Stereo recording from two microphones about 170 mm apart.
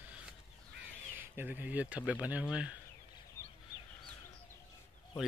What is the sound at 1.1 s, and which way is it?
Speech, 10° right (ahead or behind).